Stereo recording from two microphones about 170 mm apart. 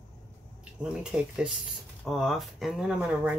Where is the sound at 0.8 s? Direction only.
5° right (ahead or behind).